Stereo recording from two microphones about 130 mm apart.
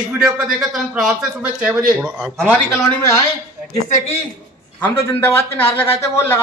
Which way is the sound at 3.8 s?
70° left (ahead or behind).